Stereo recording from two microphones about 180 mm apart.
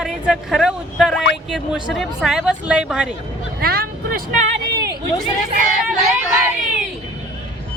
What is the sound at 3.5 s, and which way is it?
Music, 60° right (ahead or behind).